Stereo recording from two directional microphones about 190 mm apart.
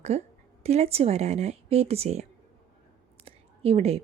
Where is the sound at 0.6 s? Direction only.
35° right (ahead or behind).